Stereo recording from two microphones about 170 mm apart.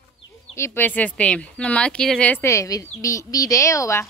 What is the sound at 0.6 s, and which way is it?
Speech, 15° left (ahead or behind).